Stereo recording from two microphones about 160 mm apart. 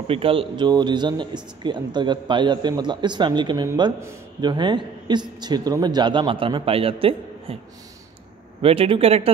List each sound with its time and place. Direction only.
0.1 s speech: 35° right (ahead or behind)
8.5 s speech: 35° right (ahead or behind)